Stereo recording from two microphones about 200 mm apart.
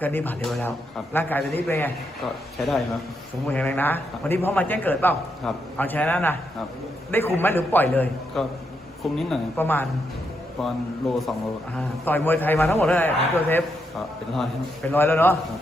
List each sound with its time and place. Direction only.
0.0 s a man's voice: 10° left (ahead or behind)
2.6 s a man's voice: centre (ahead or behind)
14.9 s a man's voice: 10° left (ahead or behind)